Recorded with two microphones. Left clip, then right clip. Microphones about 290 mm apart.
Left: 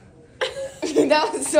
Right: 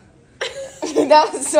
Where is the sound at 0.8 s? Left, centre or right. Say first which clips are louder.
Right 5 dB; centre.